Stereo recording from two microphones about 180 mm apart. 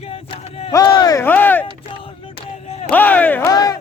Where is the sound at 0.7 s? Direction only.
20° left (ahead or behind).